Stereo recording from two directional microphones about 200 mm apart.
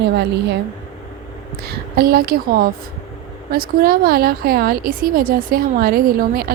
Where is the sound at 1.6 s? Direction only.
50° right (ahead or behind).